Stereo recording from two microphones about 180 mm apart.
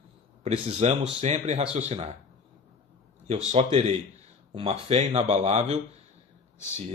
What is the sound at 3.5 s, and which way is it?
Speech, 35° right (ahead or behind).